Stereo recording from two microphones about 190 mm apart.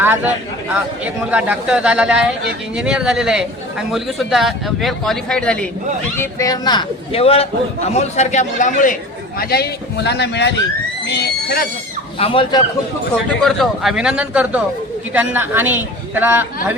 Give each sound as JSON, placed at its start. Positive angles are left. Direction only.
{"t": 0.0, "sound": "a man's voice", "side_deg": -10}
{"t": 6.1, "sound": "a man's voice", "side_deg": 20}
{"t": 9.4, "sound": "speech", "side_deg": 55}
{"t": 12.2, "sound": "a man's voice", "side_deg": 25}
{"t": 13.4, "sound": "a man's voice", "side_deg": 0}